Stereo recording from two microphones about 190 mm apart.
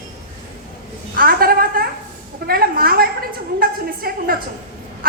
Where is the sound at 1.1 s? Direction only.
50° right (ahead or behind).